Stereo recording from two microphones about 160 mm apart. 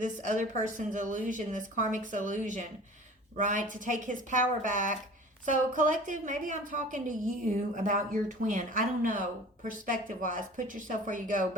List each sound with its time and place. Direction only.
0.0 s a woman's voice: 50° right (ahead or behind)